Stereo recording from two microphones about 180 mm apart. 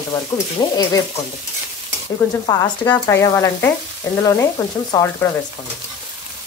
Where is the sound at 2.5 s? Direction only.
15° left (ahead or behind).